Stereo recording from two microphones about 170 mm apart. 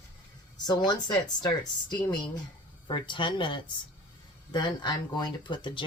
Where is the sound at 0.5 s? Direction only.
25° left (ahead or behind).